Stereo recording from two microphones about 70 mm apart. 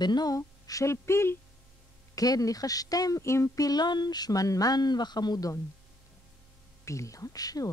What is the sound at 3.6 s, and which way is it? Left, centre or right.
Speech, left.